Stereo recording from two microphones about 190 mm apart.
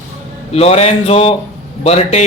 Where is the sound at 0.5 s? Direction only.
35° left (ahead or behind).